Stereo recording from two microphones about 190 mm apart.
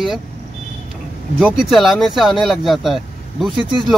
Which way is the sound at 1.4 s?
Centre (ahead or behind).